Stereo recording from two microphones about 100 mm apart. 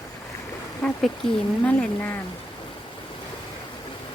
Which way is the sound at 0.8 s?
5° left (ahead or behind).